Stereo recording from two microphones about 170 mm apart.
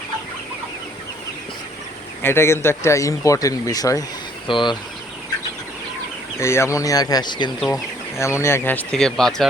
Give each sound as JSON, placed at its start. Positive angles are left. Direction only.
{"t": 2.2, "sound": "speech", "side_deg": 15}
{"t": 6.4, "sound": "speech", "side_deg": 15}
{"t": 8.2, "sound": "speech", "side_deg": 15}